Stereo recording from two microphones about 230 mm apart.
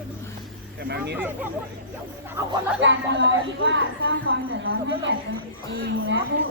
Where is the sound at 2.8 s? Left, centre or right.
Right.